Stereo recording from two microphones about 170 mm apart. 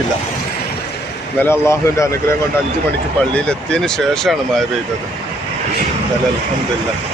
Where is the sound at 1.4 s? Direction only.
15° left (ahead or behind).